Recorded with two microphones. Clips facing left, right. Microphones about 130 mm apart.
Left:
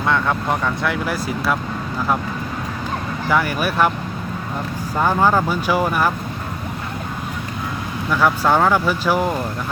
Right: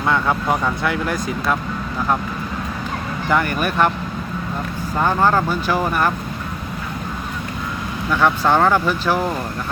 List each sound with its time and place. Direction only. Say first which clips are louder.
0.0 s speech: right 1 dB; 5° right (ahead or behind)
3.2 s speech: even; 5° left (ahead or behind)
4.9 s speech: even; 10° left (ahead or behind)
8.1 s speech: even; 5° left (ahead or behind)